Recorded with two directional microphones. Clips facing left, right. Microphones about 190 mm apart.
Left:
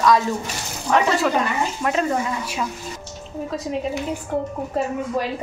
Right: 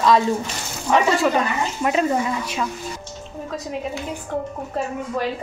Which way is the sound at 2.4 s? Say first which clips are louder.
Right 1 dB; 5° left (ahead or behind).